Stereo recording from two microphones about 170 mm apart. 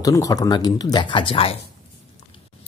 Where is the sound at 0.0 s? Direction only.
20° left (ahead or behind).